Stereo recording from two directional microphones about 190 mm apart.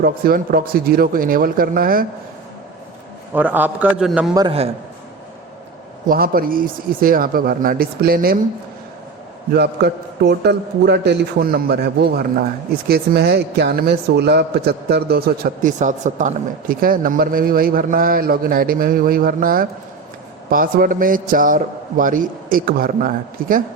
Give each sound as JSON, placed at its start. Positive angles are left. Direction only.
{"t": 0.0, "sound": "a man's voice", "side_deg": -50}
{"t": 3.3, "sound": "a man's voice", "side_deg": -10}
{"t": 4.4, "sound": "a man's voice", "side_deg": -30}
{"t": 6.1, "sound": "a man's voice", "side_deg": -50}
{"t": 9.5, "sound": "a man's voice", "side_deg": -60}